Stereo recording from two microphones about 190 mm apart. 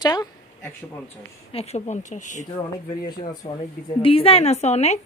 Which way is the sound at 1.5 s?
35° left (ahead or behind).